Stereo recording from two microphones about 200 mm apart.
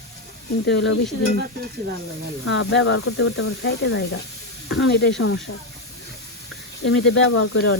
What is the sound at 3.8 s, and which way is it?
Speech, 65° left (ahead or behind).